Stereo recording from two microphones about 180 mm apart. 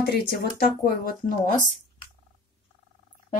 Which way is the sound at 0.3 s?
55° left (ahead or behind).